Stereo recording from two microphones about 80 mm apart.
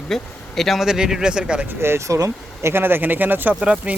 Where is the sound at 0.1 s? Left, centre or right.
Centre.